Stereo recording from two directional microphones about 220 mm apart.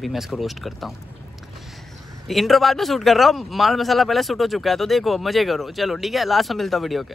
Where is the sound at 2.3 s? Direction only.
Centre (ahead or behind).